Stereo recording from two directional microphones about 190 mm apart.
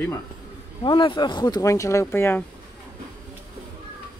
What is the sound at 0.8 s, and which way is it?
Speech, 25° left (ahead or behind).